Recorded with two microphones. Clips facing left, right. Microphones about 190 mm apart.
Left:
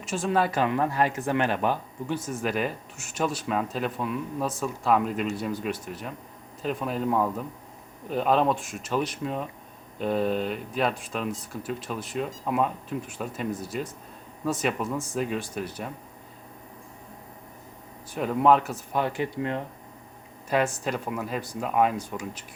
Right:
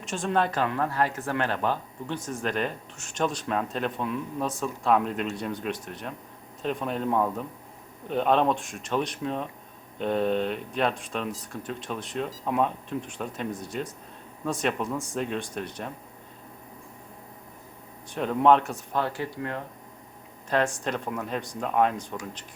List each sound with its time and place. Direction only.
0.0 s speech: 5° left (ahead or behind)
18.1 s speech: 5° left (ahead or behind)
18.9 s speech: 15° left (ahead or behind)
20.5 s speech: 5° left (ahead or behind)